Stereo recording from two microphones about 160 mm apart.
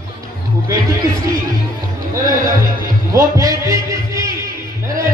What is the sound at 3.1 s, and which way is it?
A man's voice, 20° right (ahead or behind).